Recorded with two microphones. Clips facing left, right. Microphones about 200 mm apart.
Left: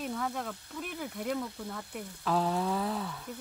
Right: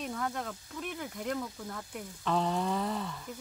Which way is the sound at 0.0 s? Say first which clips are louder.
Left 1 dB; centre (ahead or behind).